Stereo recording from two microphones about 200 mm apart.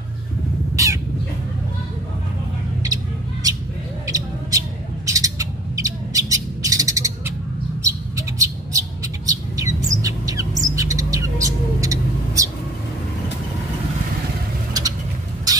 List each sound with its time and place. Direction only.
0.8 s cat: 15° right (ahead or behind)
4.1 s bird: 15° right (ahead or behind)
14.7 s a sound: 20° right (ahead or behind)